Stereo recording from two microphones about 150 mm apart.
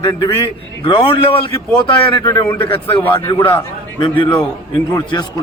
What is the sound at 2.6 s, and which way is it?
A man's voice, 35° left (ahead or behind).